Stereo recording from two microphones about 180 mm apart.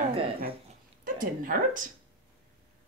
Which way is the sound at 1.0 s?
50° right (ahead or behind).